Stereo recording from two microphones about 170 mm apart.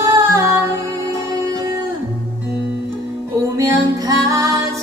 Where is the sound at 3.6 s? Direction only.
20° right (ahead or behind).